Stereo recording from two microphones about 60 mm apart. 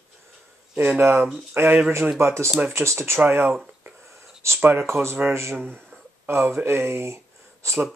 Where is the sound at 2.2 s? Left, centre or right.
Right.